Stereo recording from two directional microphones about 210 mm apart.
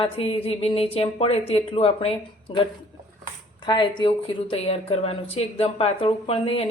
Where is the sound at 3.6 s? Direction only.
20° left (ahead or behind).